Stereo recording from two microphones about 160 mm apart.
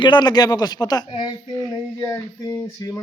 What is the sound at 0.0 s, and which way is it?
Speech, 30° left (ahead or behind).